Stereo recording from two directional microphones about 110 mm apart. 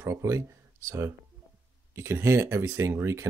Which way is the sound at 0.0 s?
25° right (ahead or behind).